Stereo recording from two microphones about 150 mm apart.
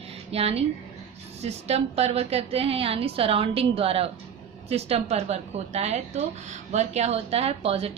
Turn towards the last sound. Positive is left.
turn(degrees=-40)  # may be behind; listen again after turning